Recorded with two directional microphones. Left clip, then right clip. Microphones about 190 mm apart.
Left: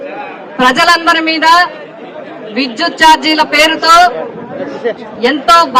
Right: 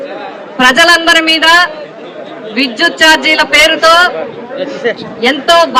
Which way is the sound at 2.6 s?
60° left (ahead or behind).